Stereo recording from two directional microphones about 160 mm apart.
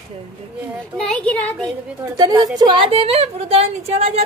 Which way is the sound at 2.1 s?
25° right (ahead or behind).